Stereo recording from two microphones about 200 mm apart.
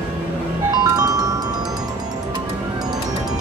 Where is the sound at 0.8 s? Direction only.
20° right (ahead or behind).